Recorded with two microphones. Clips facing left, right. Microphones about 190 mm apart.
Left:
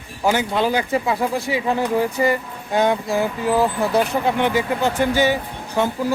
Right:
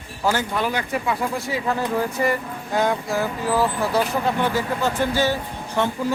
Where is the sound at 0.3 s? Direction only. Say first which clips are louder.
Left 4 dB; 15° left (ahead or behind).